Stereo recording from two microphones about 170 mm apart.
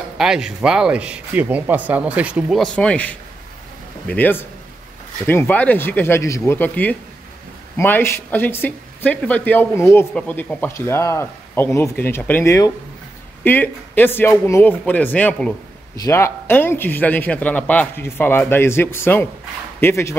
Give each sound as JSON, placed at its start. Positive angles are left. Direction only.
{"t": 0.2, "sound": "speech", "side_deg": -5}